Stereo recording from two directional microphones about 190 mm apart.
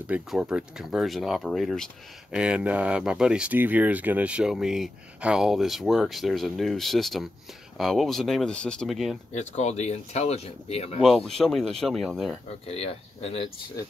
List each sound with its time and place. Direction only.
0.0 s speech: 5° right (ahead or behind)
9.3 s speech: 35° left (ahead or behind)
11.0 s speech: centre (ahead or behind)
12.6 s speech: 30° left (ahead or behind)